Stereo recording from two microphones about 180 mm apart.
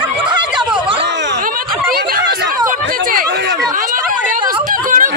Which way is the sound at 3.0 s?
50° right (ahead or behind).